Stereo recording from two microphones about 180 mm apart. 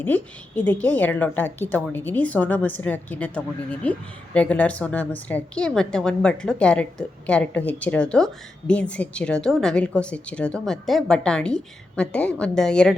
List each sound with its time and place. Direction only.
0.0 s a woman's voice: 10° left (ahead or behind)